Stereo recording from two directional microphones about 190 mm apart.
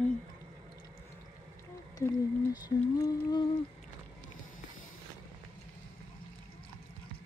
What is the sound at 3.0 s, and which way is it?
Humming, 20° left (ahead or behind).